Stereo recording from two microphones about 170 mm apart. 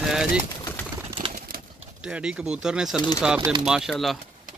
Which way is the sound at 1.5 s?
55° right (ahead or behind).